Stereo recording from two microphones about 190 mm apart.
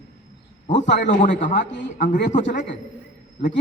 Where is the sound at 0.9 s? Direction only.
40° left (ahead or behind).